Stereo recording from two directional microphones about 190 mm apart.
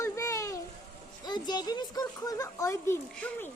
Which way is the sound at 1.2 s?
20° left (ahead or behind).